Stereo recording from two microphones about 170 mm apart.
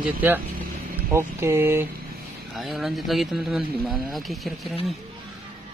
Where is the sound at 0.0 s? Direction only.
10° right (ahead or behind).